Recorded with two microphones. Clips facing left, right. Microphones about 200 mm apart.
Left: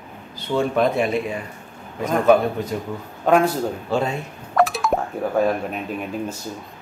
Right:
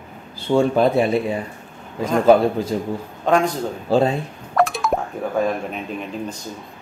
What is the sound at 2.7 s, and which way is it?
Speech, 30° right (ahead or behind).